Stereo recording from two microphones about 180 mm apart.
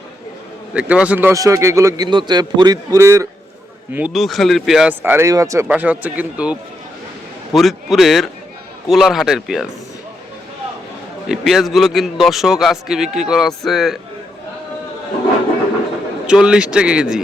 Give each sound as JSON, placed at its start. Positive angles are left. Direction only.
{"t": 0.7, "sound": "speech", "side_deg": -5}
{"t": 3.9, "sound": "a man's voice", "side_deg": -5}
{"t": 11.3, "sound": "a man's voice", "side_deg": 0}
{"t": 16.2, "sound": "a man's voice", "side_deg": -5}